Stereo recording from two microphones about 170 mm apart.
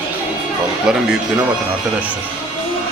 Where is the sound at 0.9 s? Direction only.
5° right (ahead or behind).